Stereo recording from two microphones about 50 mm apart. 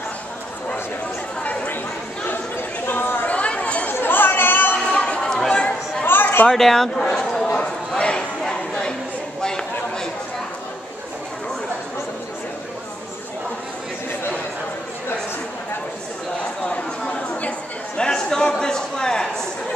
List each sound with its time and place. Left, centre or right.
1.4 s chatter: left
2.2 s chatter: left
3.3 s chatter: left
3.9 s chatter: left
4.7 s a sound: left
5.3 s chatter: centre
6.0 s chatter: left
6.5 s speech: centre
8.0 s a sound: centre
17.1 s a sound: left